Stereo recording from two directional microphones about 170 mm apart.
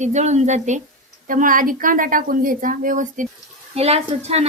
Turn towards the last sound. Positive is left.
turn(degrees=-40)  # may be behind; listen again after turning